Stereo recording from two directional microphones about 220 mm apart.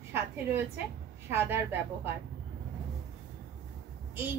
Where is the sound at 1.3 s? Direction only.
10° right (ahead or behind).